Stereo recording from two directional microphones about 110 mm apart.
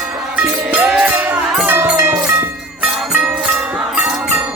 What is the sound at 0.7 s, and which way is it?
Music, 15° right (ahead or behind).